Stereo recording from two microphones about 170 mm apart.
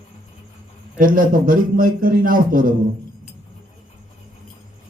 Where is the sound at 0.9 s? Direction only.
55° right (ahead or behind).